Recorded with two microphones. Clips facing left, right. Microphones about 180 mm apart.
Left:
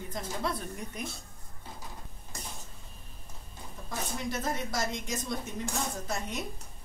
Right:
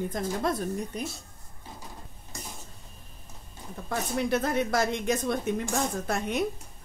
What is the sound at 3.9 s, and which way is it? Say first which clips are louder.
A woman's voice: right 8 dB; 60° right (ahead or behind).